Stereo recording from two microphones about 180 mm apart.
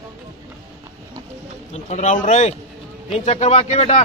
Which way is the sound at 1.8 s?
40° left (ahead or behind).